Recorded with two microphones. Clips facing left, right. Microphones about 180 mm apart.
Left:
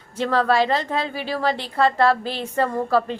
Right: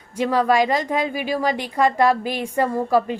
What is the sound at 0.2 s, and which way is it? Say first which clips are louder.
Speech: right 1 dB; 10° right (ahead or behind).